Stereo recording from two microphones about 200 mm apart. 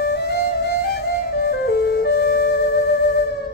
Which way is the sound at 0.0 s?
55° left (ahead or behind).